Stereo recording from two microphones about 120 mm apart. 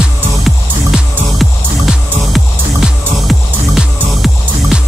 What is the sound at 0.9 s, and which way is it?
Music, centre (ahead or behind).